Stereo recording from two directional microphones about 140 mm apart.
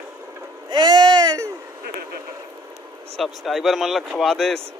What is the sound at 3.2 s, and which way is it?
Speech, centre (ahead or behind).